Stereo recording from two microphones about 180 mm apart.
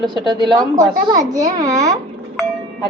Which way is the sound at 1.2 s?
45° right (ahead or behind).